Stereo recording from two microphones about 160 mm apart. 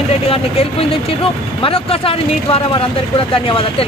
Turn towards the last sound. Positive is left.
turn(degrees=35)  # may be behind; listen again after turning